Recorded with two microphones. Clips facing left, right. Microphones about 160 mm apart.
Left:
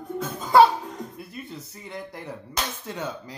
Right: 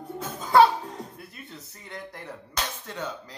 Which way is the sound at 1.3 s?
5° left (ahead or behind).